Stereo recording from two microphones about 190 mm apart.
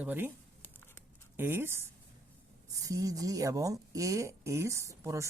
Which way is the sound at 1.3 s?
10° right (ahead or behind).